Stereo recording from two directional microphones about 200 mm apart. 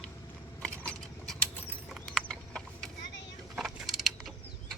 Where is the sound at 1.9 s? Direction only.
5° left (ahead or behind).